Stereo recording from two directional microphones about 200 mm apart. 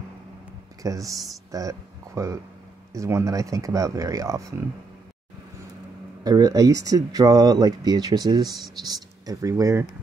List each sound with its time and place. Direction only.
0.8 s speech: 15° right (ahead or behind)
6.2 s speech: 20° right (ahead or behind)